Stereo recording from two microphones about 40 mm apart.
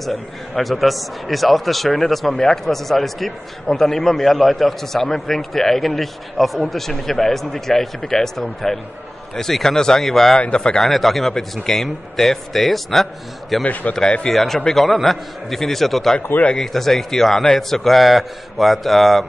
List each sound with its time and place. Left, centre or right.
0.0 s a man's voice: centre
10.3 s a man's voice: left
10.8 s a man's voice: centre